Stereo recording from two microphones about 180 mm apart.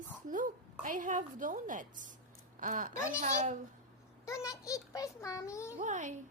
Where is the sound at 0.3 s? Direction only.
50° right (ahead or behind).